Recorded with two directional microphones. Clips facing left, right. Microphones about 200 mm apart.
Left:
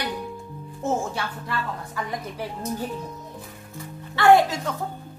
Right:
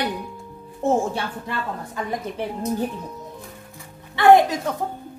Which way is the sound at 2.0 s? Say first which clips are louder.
Right 4 dB; 25° right (ahead or behind).